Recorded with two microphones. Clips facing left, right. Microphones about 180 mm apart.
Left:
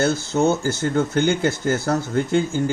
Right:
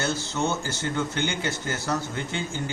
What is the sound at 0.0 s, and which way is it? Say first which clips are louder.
Speech: left 8 dB; 50° left (ahead or behind).